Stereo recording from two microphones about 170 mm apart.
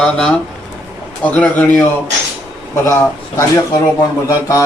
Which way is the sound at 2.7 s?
15° left (ahead or behind).